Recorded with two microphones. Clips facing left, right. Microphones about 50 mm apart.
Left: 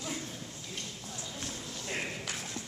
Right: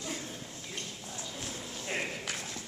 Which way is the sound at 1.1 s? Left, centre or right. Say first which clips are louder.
Right 1 dB; centre.